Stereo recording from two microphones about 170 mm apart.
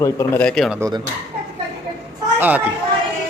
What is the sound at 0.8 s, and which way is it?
Speech, 20° right (ahead or behind).